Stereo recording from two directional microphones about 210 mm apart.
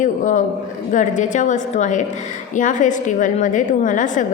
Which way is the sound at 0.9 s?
35° left (ahead or behind).